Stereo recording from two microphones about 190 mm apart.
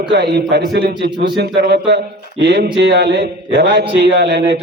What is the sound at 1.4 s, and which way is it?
A man's voice, 65° right (ahead or behind).